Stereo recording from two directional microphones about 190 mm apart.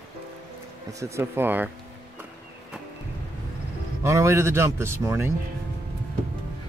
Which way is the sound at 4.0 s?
15° right (ahead or behind).